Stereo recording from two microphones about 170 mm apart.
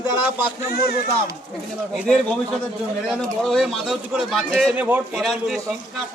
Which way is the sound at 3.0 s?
Centre (ahead or behind).